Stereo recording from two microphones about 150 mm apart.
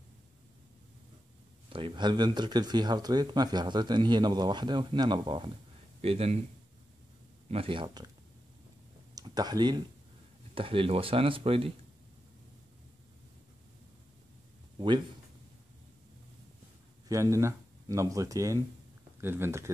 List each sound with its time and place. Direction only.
1.7 s speech: 35° right (ahead or behind)
5.9 s speech: 45° right (ahead or behind)
7.4 s speech: 40° right (ahead or behind)
9.1 s speech: 25° right (ahead or behind)
17.1 s speech: 20° right (ahead or behind)